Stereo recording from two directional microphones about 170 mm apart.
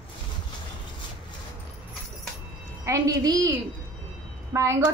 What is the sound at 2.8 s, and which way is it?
A woman's voice, 20° right (ahead or behind).